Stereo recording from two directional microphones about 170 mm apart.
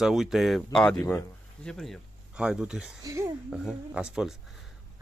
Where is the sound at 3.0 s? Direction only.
20° right (ahead or behind).